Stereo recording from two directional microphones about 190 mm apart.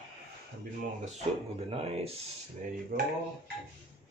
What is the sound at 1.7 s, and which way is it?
Speech, 30° right (ahead or behind).